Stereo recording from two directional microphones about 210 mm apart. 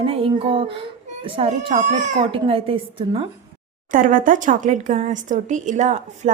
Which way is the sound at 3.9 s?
40° right (ahead or behind).